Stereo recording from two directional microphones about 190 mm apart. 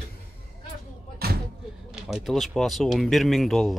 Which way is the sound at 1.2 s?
55° right (ahead or behind).